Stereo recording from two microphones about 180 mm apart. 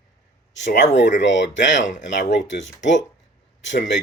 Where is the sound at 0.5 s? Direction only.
80° left.